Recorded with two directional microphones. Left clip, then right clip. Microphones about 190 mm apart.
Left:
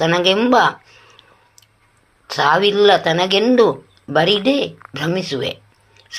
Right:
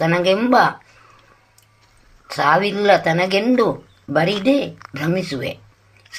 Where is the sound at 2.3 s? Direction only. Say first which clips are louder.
Left 2 dB; 30° left (ahead or behind).